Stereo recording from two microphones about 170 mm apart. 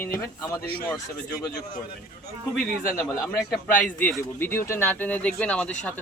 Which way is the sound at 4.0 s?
10° left (ahead or behind).